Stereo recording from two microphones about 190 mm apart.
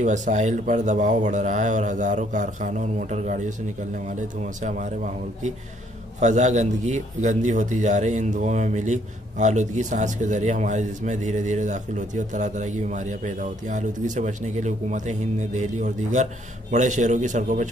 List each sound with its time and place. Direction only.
0.0 s a man's voice: 40° right (ahead or behind)
4.6 s a man's voice: 40° right (ahead or behind)
6.1 s a man's voice: 40° right (ahead or behind)